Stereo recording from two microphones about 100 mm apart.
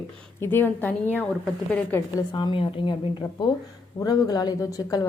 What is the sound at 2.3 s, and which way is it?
Speech, 50° left (ahead or behind).